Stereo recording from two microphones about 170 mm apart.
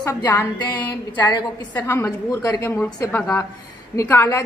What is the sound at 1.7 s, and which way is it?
A woman's voice, 15° left (ahead or behind).